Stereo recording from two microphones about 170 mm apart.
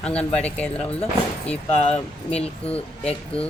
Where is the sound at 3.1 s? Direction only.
35° left (ahead or behind).